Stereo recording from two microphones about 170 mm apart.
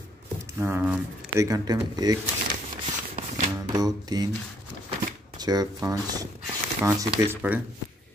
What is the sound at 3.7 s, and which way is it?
Speech, 25° right (ahead or behind).